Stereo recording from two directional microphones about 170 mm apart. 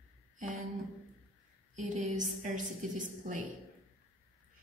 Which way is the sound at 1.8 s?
45° right (ahead or behind).